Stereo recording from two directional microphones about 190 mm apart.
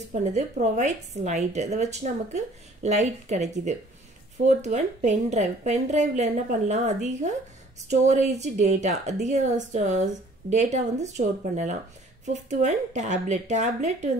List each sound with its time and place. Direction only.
0.1 s a woman's voice: 35° right (ahead or behind)